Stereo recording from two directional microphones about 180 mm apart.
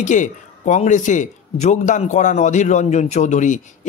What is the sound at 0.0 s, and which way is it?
Speech, 45° left (ahead or behind).